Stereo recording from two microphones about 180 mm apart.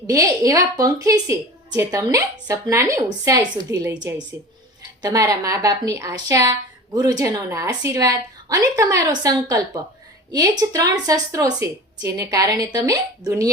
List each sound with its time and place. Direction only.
0.1 s a woman's voice: 20° right (ahead or behind)